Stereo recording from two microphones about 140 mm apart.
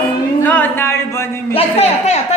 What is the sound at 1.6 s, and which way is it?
Speech, 50° left (ahead or behind).